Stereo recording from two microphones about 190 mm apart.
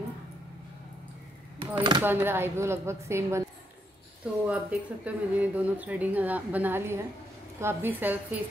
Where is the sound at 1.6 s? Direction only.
25° right (ahead or behind).